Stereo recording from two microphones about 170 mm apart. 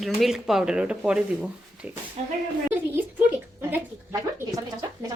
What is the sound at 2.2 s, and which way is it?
Speech, 40° right (ahead or behind).